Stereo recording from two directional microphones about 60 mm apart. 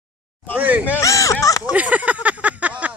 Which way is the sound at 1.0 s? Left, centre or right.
Left.